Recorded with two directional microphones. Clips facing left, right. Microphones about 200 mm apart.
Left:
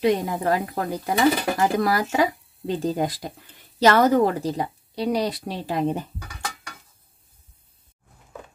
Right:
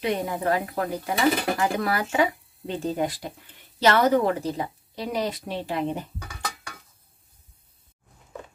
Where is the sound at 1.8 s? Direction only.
40° left (ahead or behind).